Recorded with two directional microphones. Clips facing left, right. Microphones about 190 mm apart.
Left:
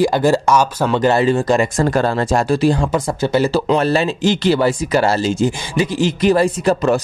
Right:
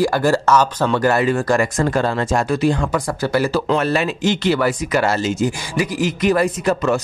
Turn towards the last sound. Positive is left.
turn(degrees=35)  # may be behind; listen again after turning